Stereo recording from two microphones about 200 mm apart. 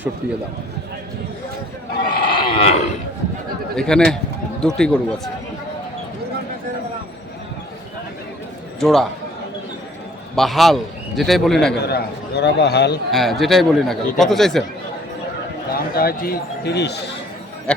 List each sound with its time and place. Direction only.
2.2 s a sound: 25° left (ahead or behind)
3.8 s speech: 5° left (ahead or behind)
8.8 s speech: centre (ahead or behind)
10.3 s speech: centre (ahead or behind)
11.9 s speech: 55° left (ahead or behind)
13.1 s speech: centre (ahead or behind)
15.7 s speech: 50° left (ahead or behind)
17.7 s speech: 5° left (ahead or behind)